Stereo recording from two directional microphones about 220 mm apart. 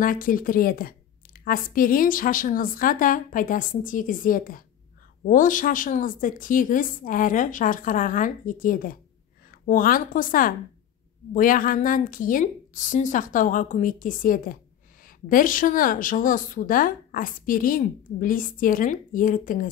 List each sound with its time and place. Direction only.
0.0 s a woman's voice: 40° left (ahead or behind)